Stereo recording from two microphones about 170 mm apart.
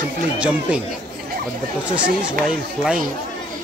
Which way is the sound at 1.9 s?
5° right (ahead or behind).